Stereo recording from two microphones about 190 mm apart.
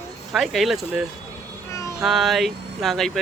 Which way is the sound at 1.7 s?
15° left (ahead or behind).